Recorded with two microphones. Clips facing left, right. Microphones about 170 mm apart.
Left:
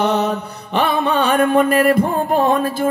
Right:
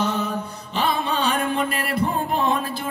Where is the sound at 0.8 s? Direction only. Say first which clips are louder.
Left 6 dB; 60° left (ahead or behind).